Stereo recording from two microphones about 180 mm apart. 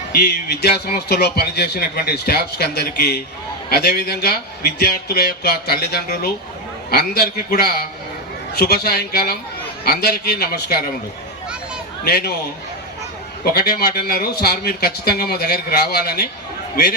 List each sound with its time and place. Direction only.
0.1 s speech: 60° left (ahead or behind)
12.0 s speech: 60° left (ahead or behind)
13.4 s speech: 60° left (ahead or behind)